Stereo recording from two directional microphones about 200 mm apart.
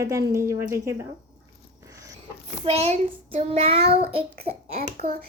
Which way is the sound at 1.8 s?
15° right (ahead or behind).